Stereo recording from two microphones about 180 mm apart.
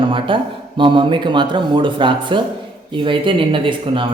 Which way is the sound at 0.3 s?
30° right (ahead or behind).